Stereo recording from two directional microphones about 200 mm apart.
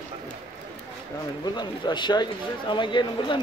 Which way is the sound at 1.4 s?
20° left (ahead or behind).